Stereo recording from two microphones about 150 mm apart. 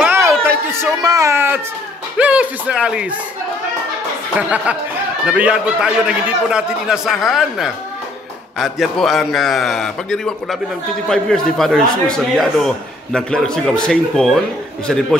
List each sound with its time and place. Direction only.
0.0 s a sound: 15° right (ahead or behind)
1.0 s speech: 20° right (ahead or behind)
4.4 s a man's voice: 10° right (ahead or behind)